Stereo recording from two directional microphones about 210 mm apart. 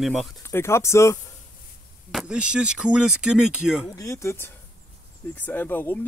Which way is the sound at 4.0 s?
15° left (ahead or behind).